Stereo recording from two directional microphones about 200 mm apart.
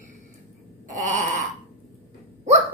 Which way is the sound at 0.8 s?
40° right (ahead or behind).